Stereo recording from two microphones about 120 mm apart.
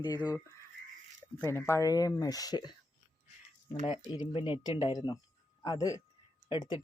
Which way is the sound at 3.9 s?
40° left (ahead or behind).